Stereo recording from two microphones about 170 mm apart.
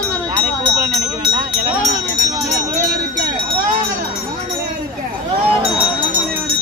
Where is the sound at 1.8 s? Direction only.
45° right (ahead or behind).